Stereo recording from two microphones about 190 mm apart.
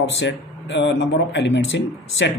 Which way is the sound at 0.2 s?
70° left (ahead or behind).